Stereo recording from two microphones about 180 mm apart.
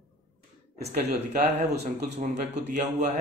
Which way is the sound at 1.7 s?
65° right (ahead or behind).